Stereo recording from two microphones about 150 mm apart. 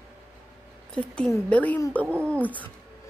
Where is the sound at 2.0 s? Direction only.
15° right (ahead or behind).